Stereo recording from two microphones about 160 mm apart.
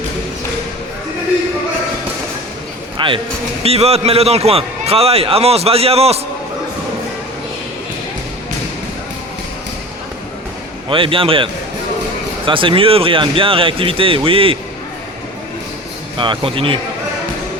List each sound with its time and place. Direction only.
3.0 s a man's voice: 30° right (ahead or behind)
10.8 s a man's voice: 35° right (ahead or behind)
12.5 s a man's voice: 30° right (ahead or behind)
16.1 s a man's voice: 30° right (ahead or behind)